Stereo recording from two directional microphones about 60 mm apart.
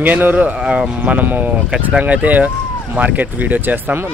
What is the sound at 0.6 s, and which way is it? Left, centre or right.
Speech, centre.